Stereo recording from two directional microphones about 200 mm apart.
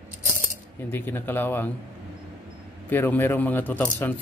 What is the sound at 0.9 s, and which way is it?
Speech, 10° left (ahead or behind).